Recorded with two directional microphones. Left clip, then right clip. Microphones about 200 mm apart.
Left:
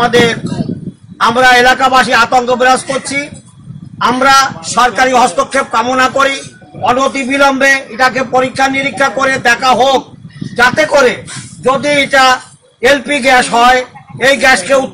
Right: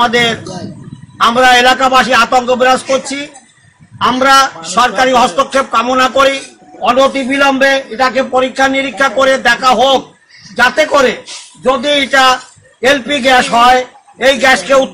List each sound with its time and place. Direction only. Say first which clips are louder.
0.0 s a man's voice: left 1 dB; 15° left (ahead or behind)